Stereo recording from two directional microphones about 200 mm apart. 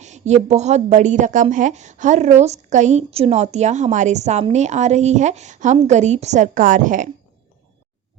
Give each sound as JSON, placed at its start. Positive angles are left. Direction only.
{"t": 0.0, "sound": "a woman's voice", "side_deg": -35}